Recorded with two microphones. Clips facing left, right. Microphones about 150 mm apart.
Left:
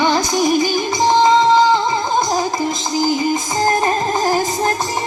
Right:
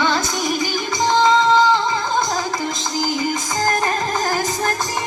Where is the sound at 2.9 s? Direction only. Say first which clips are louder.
Left 5 dB; 20° left (ahead or behind).